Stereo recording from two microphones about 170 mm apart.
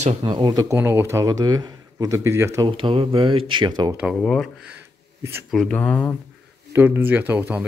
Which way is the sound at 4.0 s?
Centre (ahead or behind).